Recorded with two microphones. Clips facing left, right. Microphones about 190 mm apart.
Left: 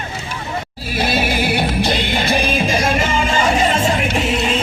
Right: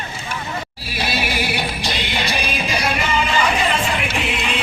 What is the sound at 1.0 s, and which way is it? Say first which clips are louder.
Music: left 5 dB; 50° left (ahead or behind).